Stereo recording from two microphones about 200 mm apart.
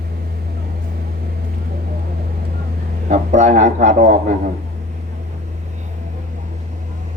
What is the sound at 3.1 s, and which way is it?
A man's voice, 35° right (ahead or behind).